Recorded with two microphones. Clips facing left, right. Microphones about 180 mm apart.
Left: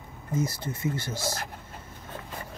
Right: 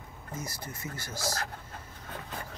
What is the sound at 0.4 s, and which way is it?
Speech, 25° left (ahead or behind).